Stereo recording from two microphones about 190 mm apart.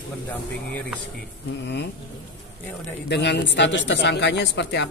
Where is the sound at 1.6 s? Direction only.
65° left (ahead or behind).